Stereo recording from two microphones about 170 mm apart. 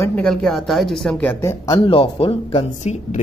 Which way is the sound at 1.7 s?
30° left (ahead or behind).